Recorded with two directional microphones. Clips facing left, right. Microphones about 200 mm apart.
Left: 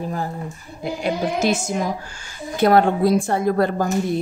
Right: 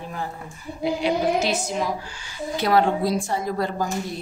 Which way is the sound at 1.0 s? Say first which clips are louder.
Left 2 dB; 50° left (ahead or behind).